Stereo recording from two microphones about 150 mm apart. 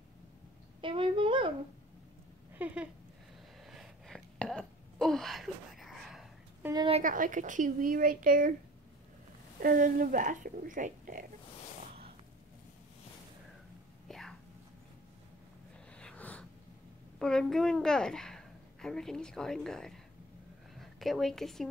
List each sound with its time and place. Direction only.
0.7 s a child's voice: 35° right (ahead or behind)
2.6 s speech: 10° right (ahead or behind)
3.6 s a sound: centre (ahead or behind)
7.0 s speech: 60° right (ahead or behind)
9.6 s speech: 70° right (ahead or behind)
14.0 s whispering: 5° left (ahead or behind)
16.0 s snort: 10° left (ahead or behind)
17.2 s a woman's voice: 5° left (ahead or behind)